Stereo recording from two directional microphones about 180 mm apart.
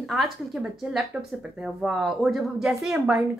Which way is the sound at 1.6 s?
Centre (ahead or behind).